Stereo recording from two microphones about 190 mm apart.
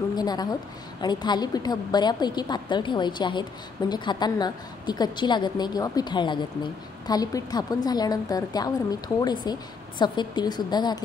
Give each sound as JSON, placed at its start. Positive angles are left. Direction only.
{"t": 0.1, "sound": "a woman's voice", "side_deg": 20}